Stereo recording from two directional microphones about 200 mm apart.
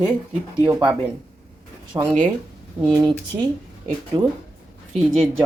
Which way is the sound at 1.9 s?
20° right (ahead or behind).